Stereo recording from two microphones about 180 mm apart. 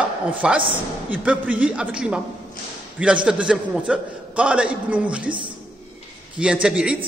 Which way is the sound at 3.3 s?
5° right (ahead or behind).